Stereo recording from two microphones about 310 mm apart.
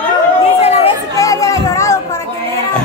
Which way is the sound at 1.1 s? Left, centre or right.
Centre.